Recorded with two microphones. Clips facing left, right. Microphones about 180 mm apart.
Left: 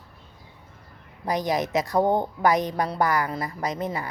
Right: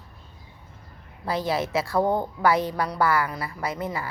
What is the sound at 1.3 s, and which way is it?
A woman's voice, 15° left (ahead or behind).